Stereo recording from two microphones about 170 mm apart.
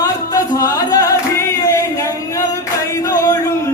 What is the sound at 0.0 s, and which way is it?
Music, 20° left (ahead or behind).